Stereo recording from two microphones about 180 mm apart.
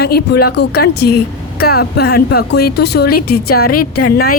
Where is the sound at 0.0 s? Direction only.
60° left (ahead or behind).